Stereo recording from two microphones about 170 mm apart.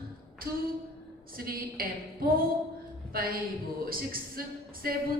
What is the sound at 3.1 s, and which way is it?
A man's voice, 60° right (ahead or behind).